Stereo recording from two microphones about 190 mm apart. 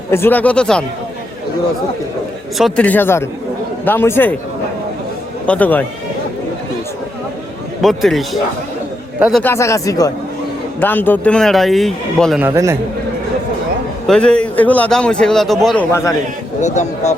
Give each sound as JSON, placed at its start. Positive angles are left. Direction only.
{"t": 0.1, "sound": "speech", "side_deg": 10}
{"t": 2.6, "sound": "speech", "side_deg": 5}
{"t": 5.5, "sound": "speech", "side_deg": 10}
{"t": 7.8, "sound": "a man's voice", "side_deg": 0}
{"t": 9.4, "sound": "a man's voice", "side_deg": 15}
{"t": 12.4, "sound": "a man's voice", "side_deg": -15}
{"t": 14.1, "sound": "a man's voice", "side_deg": 5}
{"t": 16.6, "sound": "speech", "side_deg": 40}